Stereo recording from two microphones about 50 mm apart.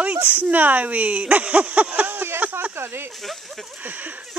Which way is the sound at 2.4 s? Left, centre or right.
Right.